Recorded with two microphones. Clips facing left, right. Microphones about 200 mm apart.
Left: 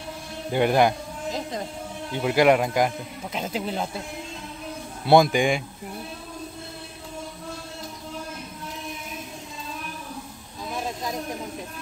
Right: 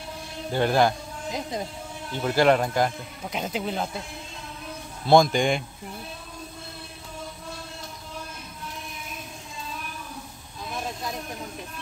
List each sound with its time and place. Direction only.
0.5 s speech: 15° left (ahead or behind)
2.1 s speech: 15° left (ahead or behind)
3.3 s speech: centre (ahead or behind)
5.0 s speech: 10° left (ahead or behind)